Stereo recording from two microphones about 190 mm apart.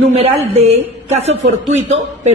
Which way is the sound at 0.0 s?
30° right (ahead or behind).